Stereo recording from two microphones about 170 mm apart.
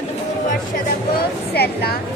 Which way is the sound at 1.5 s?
65° left (ahead or behind).